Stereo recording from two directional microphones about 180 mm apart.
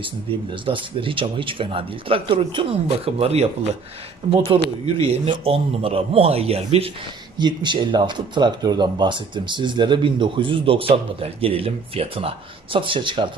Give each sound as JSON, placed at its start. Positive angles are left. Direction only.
{"t": 0.5, "sound": "speech", "side_deg": -30}